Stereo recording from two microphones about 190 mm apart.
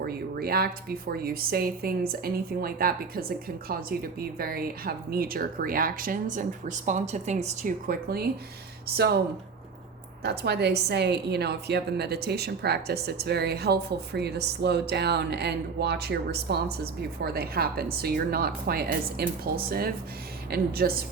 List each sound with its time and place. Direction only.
0.0 s speech: 55° right (ahead or behind)
10.2 s a woman's voice: 60° right (ahead or behind)